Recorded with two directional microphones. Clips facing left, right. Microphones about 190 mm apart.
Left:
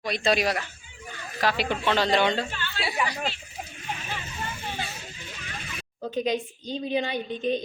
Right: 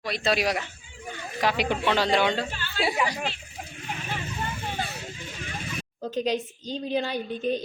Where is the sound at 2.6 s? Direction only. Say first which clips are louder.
Right 4 dB; 45° right (ahead or behind).